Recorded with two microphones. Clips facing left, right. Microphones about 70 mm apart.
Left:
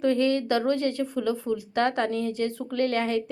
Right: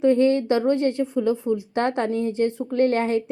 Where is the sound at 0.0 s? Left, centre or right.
Right.